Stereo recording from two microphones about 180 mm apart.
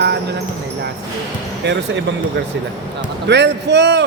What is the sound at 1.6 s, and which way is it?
Speech, 70° right (ahead or behind).